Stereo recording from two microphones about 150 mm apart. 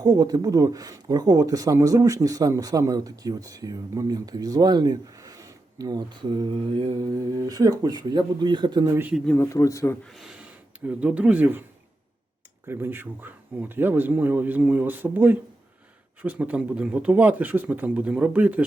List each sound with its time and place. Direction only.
0.0 s speech: 25° right (ahead or behind)
7.2 s speech: 25° right (ahead or behind)
9.1 s speech: 5° left (ahead or behind)
9.5 s speech: 20° left (ahead or behind)
10.1 s speech: centre (ahead or behind)
12.6 s speech: 15° right (ahead or behind)